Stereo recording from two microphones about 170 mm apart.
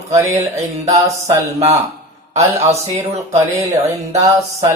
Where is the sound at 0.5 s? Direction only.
20° right (ahead or behind).